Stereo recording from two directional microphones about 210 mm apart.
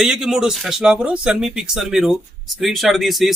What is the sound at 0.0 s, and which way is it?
Speech, 5° right (ahead or behind).